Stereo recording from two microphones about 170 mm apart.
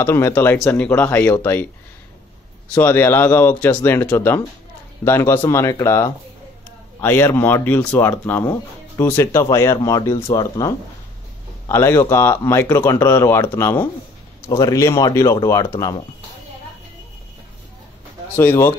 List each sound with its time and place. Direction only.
0.0 s speech: 15° left (ahead or behind)
2.7 s speech: 10° left (ahead or behind)
18.3 s speech: 15° left (ahead or behind)